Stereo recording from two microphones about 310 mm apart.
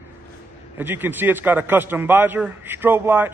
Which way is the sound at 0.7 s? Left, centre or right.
Centre.